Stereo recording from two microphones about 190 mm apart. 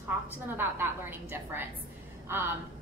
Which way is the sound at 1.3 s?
10° right (ahead or behind).